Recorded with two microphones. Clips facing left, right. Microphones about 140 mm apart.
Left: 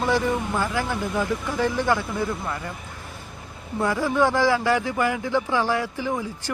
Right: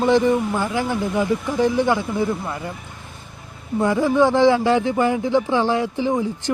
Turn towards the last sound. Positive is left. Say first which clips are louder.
# right 6 dB
turn(degrees=-20)  # may be behind; listen again after turning